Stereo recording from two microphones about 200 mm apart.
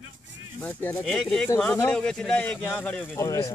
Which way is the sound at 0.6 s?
10° left (ahead or behind).